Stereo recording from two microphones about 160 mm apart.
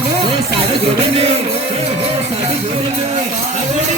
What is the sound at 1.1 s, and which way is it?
Music, 40° right (ahead or behind).